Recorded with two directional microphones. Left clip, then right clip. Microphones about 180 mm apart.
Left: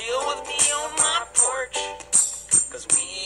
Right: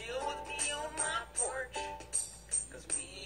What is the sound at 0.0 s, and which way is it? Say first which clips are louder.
Music: left 13 dB; 30° left (ahead or behind).